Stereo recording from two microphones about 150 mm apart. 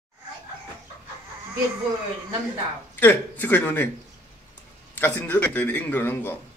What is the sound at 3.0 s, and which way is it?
Speech, 10° left (ahead or behind).